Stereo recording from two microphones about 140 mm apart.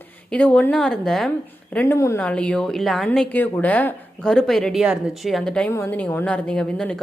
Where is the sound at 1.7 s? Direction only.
20° left (ahead or behind).